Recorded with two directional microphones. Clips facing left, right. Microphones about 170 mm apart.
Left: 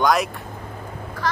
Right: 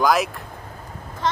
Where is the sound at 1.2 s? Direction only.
25° right (ahead or behind).